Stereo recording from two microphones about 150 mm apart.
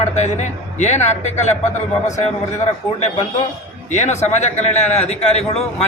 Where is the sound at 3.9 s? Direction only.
50° left (ahead or behind).